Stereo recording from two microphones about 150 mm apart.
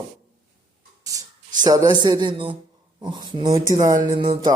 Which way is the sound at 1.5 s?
25° right (ahead or behind).